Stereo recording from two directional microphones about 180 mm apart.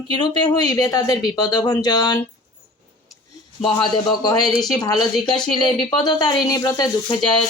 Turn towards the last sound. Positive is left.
turn(degrees=20)  # may be behind; listen again after turning